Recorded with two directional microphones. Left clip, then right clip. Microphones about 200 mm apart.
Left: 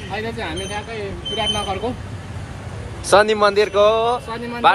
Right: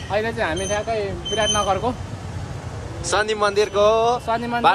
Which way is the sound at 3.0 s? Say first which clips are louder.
Left 6 dB; 10° right (ahead or behind).